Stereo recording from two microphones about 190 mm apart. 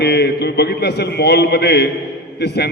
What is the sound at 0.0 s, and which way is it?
Speech, 60° left (ahead or behind).